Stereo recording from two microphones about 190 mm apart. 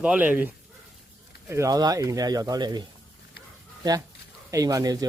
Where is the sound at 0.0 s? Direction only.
5° right (ahead or behind); by 2.8 s 20° right (ahead or behind).